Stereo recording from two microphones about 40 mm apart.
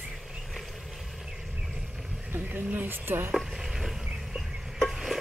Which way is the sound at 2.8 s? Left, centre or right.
Right.